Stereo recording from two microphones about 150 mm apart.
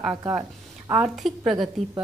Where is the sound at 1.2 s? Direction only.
Centre (ahead or behind).